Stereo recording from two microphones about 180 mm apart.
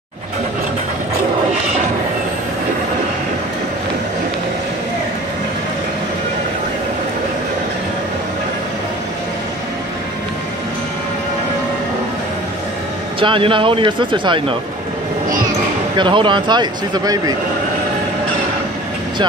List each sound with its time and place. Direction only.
13.2 s speech: 30° right (ahead or behind)
16.0 s speech: 25° right (ahead or behind)